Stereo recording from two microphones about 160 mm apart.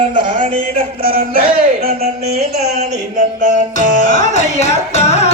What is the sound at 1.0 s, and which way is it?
Music, 60° right (ahead or behind).